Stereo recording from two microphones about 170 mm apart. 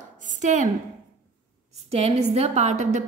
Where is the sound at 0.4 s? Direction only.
45° right (ahead or behind).